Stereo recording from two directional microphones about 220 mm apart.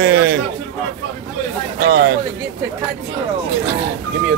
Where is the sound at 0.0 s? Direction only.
55° right (ahead or behind).